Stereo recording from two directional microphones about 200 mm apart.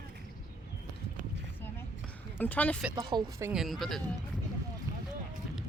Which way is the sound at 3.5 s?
Centre (ahead or behind).